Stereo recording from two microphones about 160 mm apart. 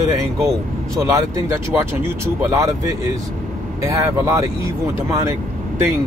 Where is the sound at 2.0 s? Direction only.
15° right (ahead or behind).